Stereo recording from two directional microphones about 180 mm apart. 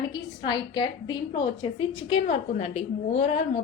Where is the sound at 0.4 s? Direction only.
25° left (ahead or behind).